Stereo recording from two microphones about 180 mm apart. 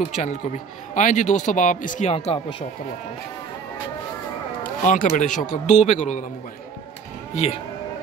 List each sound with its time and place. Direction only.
0.1 s speech: 40° left (ahead or behind)
4.8 s speech: 45° left (ahead or behind)
7.3 s speech: 40° left (ahead or behind)